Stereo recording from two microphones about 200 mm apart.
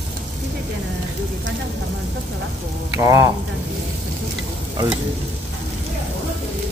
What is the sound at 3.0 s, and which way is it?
Speech, 15° right (ahead or behind).